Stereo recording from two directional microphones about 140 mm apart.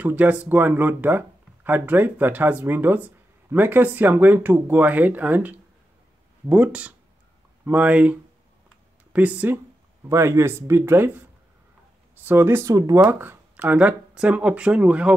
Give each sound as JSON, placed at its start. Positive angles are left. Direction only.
{"t": 0.0, "sound": "speech", "side_deg": -10}
{"t": 12.3, "sound": "speech", "side_deg": -15}